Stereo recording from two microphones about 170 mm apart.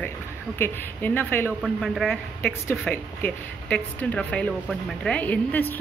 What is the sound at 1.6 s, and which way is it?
Speech, centre (ahead or behind).